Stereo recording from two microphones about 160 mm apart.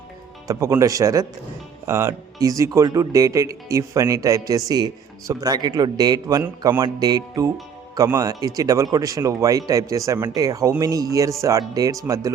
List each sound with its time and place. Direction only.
0.4 s speech: 20° right (ahead or behind)